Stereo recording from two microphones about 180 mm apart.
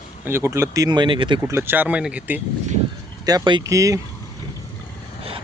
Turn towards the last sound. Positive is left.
turn(degrees=-15)  # may be behind; listen again after turning